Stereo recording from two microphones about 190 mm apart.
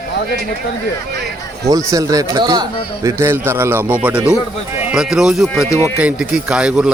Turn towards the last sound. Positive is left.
turn(degrees=-5)  # may be behind; listen again after turning